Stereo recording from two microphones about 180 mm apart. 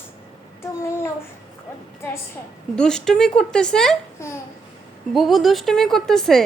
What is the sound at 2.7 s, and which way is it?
A woman's voice, 5° left (ahead or behind).